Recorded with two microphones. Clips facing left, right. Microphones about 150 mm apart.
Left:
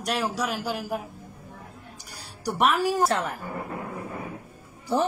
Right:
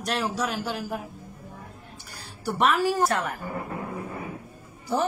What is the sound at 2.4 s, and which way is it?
Speech, 15° left (ahead or behind).